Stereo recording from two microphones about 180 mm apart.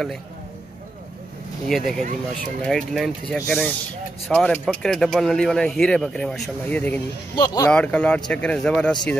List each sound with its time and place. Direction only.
1.7 s speech: centre (ahead or behind)
7.3 s speech: 20° left (ahead or behind)
7.7 s speech: 5° left (ahead or behind)